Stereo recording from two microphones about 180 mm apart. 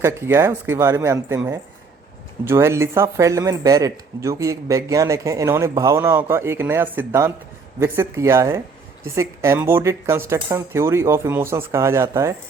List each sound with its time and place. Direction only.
0.0 s speech: 15° right (ahead or behind)